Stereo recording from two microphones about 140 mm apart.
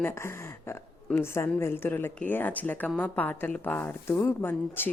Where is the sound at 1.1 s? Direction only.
20° left (ahead or behind).